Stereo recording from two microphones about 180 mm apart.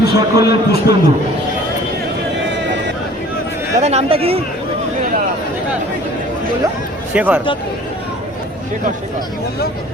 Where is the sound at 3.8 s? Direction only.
35° right (ahead or behind).